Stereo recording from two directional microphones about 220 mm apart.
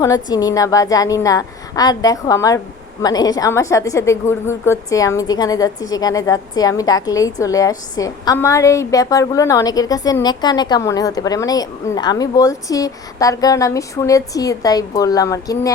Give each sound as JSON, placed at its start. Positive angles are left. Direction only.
{"t": 0.0, "sound": "a woman's voice", "side_deg": 15}